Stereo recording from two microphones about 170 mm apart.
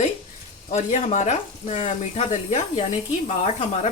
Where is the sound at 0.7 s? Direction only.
40° left (ahead or behind).